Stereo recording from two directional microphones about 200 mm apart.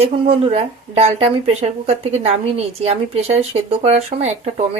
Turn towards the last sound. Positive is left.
turn(degrees=-30)  # may be behind; listen again after turning